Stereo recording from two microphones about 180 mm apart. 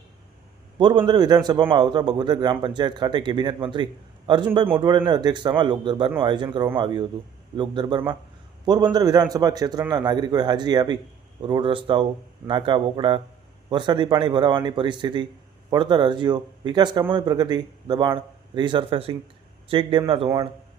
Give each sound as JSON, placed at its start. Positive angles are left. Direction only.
{"t": 0.8, "sound": "speech", "side_deg": -25}